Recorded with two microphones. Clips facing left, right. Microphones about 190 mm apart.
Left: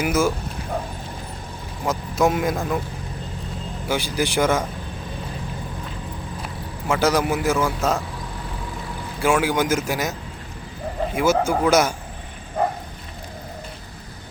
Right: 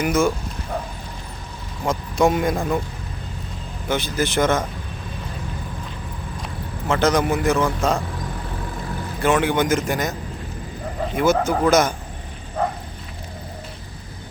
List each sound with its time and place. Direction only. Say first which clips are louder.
0.0 s a man's voice: right 1 dB; 5° left (ahead or behind)
1.8 s a man's voice: right 1 dB; 5° left (ahead or behind)
3.8 s a man's voice: right 1 dB; 10° left (ahead or behind)
6.8 s a man's voice: right 1 dB; 10° left (ahead or behind)
9.2 s a man's voice: right 1 dB; 5° left (ahead or behind)